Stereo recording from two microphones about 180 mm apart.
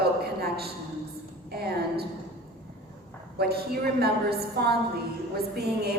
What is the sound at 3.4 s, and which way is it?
A man's voice, 60° right (ahead or behind).